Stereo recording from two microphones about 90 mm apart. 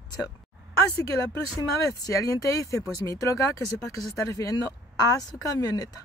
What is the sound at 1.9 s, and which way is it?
Speech, 40° left (ahead or behind).